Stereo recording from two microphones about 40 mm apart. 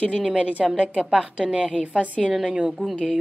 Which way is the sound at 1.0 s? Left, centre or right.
Centre.